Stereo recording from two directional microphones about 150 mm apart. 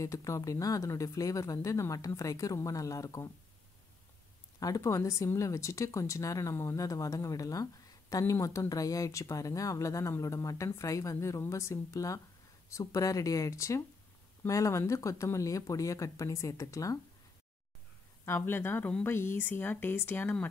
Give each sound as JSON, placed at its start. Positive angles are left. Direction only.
{"t": 0.0, "sound": "speech", "side_deg": 20}
{"t": 4.6, "sound": "speech", "side_deg": 25}
{"t": 18.2, "sound": "a woman's voice", "side_deg": 15}